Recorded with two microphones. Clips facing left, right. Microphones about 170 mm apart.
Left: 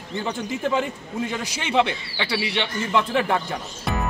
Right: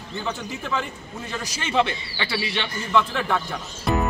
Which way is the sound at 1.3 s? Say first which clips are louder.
Even; 15° left (ahead or behind).